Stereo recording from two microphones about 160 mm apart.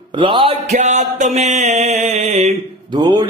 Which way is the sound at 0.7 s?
45° right (ahead or behind).